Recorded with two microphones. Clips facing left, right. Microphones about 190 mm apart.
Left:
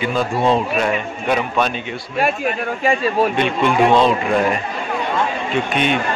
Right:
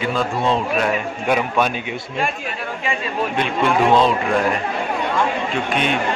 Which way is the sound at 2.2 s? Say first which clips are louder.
Left 8 dB; 40° left (ahead or behind).